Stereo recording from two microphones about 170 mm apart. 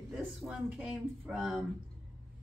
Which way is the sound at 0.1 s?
5° right (ahead or behind).